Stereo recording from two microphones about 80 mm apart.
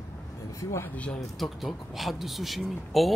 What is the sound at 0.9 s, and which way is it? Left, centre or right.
Speech, centre.